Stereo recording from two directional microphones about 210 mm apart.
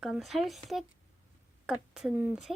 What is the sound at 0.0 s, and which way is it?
Speech, centre (ahead or behind).